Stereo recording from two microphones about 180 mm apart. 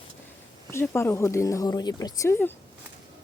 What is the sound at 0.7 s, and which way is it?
Speech, 15° left (ahead or behind).